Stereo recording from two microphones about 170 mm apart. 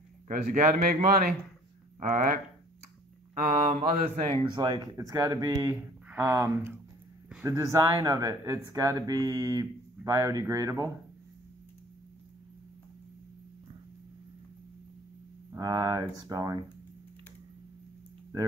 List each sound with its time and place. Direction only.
0.3 s speech: 55° right (ahead or behind)
2.0 s speech: 45° right (ahead or behind)
3.4 s speech: 50° right (ahead or behind)
4.3 s speech: 25° right (ahead or behind)
15.5 s speech: 20° right (ahead or behind)